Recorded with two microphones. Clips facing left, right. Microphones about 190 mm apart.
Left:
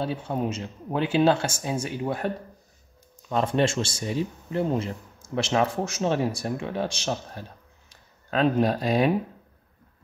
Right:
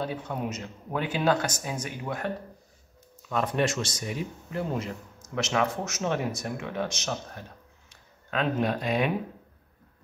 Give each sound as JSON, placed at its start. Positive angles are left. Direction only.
{"t": 0.0, "sound": "speech", "side_deg": 30}
{"t": 3.3, "sound": "speech", "side_deg": 30}